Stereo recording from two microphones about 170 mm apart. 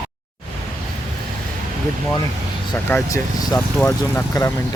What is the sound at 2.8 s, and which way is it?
Speech, 15° left (ahead or behind).